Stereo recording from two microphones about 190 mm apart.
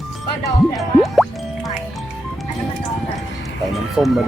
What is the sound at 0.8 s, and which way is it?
Music, centre (ahead or behind).